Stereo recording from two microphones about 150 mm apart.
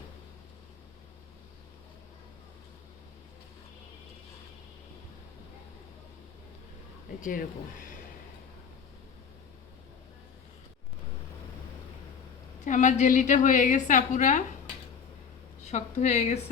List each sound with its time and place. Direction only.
7.2 s speech: 65° left (ahead or behind)
12.5 s a woman's voice: 55° left (ahead or behind)
15.6 s a woman's voice: 50° left (ahead or behind)